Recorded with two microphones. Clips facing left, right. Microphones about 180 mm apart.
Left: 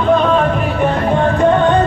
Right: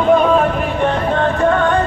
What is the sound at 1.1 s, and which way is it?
Music, 20° left (ahead or behind).